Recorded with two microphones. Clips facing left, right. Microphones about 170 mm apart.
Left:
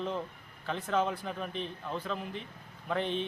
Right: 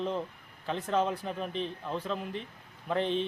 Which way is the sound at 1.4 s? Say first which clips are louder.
Right 3 dB; centre (ahead or behind).